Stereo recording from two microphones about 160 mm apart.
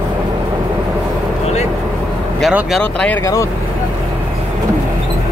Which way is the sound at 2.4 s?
Centre (ahead or behind).